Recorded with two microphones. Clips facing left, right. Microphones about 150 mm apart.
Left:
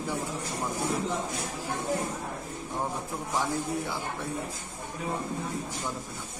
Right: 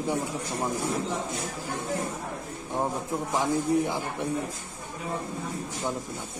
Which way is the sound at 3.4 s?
15° right (ahead or behind).